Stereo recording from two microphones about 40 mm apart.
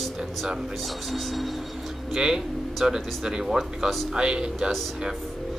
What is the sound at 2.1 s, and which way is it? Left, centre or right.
Speech, centre.